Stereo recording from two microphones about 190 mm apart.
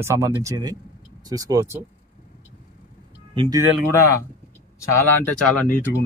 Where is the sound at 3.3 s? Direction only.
25° right (ahead or behind).